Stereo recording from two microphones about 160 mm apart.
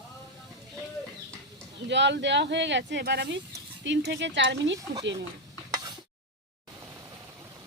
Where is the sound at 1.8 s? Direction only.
90° right.